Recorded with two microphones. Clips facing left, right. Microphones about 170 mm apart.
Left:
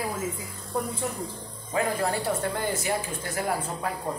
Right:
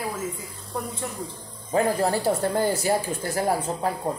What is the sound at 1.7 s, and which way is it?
Speech, 35° right (ahead or behind).